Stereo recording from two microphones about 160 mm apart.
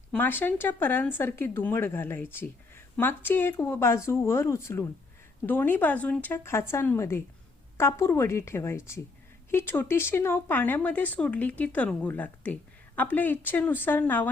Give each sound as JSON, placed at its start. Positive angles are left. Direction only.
{"t": 0.1, "sound": "speech", "side_deg": 10}